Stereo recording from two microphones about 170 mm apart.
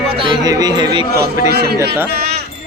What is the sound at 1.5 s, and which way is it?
Speech, 65° right (ahead or behind).